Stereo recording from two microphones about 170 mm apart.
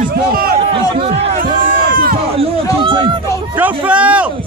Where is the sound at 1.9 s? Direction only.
60° right (ahead or behind).